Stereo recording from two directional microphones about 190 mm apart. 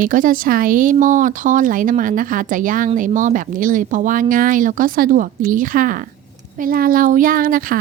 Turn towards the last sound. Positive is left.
turn(degrees=-50)  # may be behind; listen again after turning